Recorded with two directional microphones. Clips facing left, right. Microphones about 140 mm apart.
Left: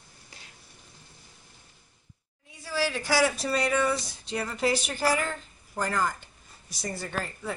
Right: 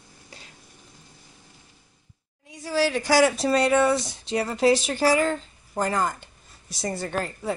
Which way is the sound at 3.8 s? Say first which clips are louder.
Right 6 dB; 75° right (ahead or behind).